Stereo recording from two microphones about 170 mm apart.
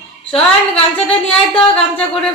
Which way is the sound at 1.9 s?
5° left (ahead or behind).